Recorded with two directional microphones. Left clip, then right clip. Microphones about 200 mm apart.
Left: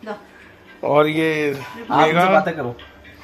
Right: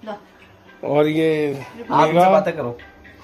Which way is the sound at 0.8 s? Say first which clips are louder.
Left 1 dB; 10° right (ahead or behind).